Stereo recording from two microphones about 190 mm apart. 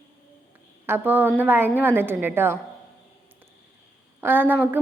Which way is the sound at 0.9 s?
10° right (ahead or behind).